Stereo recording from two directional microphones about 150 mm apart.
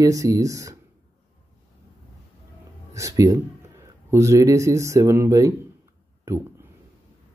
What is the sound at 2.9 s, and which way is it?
Speech, 20° right (ahead or behind).